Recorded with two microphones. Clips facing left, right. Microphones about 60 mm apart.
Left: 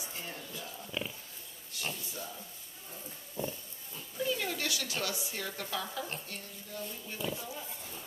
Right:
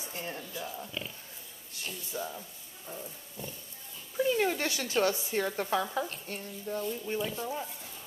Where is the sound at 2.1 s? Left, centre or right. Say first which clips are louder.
Right 7 dB; right.